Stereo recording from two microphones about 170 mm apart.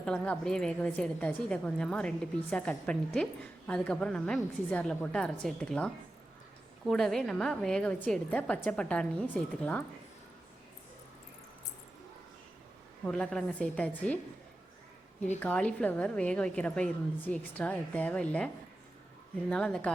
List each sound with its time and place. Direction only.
0.0 s a woman's voice: 5° left (ahead or behind)
13.1 s a woman's voice: 5° left (ahead or behind)
15.4 s a woman's voice: 5° left (ahead or behind)